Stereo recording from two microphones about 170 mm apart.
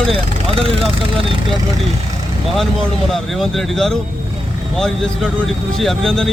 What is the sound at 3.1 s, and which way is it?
Speech, centre (ahead or behind).